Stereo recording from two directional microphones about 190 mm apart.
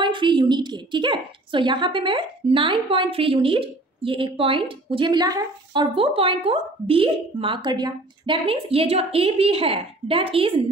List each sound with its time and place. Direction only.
0.0 s a woman's voice: 25° right (ahead or behind)